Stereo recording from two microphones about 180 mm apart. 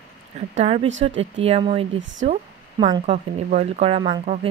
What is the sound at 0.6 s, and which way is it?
Speech, 35° right (ahead or behind).